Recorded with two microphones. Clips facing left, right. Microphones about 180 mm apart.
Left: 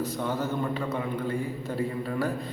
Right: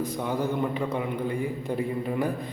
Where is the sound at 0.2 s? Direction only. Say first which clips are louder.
Right 3 dB; 15° right (ahead or behind).